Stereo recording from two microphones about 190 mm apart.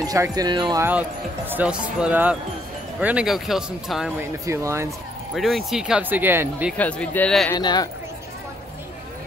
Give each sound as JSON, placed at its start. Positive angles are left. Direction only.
{"t": 0.0, "sound": "speech", "side_deg": -20}
{"t": 1.5, "sound": "speech", "side_deg": -5}
{"t": 4.2, "sound": "speech", "side_deg": -15}
{"t": 5.3, "sound": "speech", "side_deg": 0}
{"t": 6.8, "sound": "speech", "side_deg": 5}
{"t": 7.5, "sound": "speech", "side_deg": 20}